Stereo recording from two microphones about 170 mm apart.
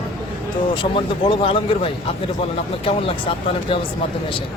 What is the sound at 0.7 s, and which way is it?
Speech, 30° left (ahead or behind).